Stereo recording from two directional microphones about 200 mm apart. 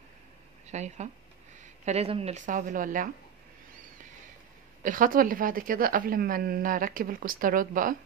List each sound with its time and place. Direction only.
0.7 s speech: 35° right (ahead or behind)
4.8 s a woman's voice: 45° right (ahead or behind)